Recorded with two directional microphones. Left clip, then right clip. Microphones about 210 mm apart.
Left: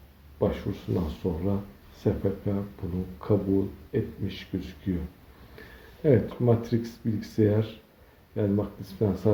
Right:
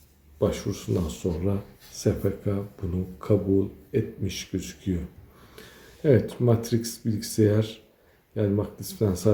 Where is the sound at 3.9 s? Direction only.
15° right (ahead or behind).